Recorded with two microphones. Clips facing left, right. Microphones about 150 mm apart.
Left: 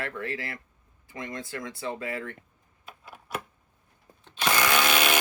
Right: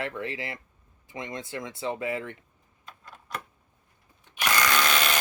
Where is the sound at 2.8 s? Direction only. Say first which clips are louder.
Left 2 dB; 10° left (ahead or behind).